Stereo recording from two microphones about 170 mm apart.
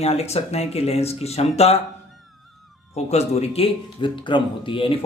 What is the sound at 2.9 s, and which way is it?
Speech, 40° left (ahead or behind).